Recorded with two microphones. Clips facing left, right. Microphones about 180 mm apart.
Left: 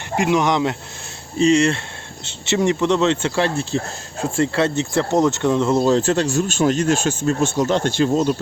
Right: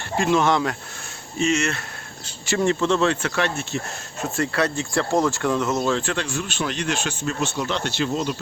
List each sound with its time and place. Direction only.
0.2 s speech: 15° left (ahead or behind)
1.4 s speech: 30° left (ahead or behind)
2.6 s speech: 15° left (ahead or behind); by 8.4 s 45° left (ahead or behind)